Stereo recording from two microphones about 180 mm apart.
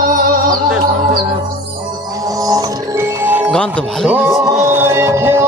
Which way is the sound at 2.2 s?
20° right (ahead or behind).